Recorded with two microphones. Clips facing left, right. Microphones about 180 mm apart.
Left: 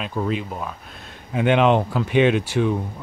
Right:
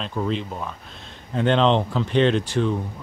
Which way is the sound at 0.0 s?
5° left (ahead or behind).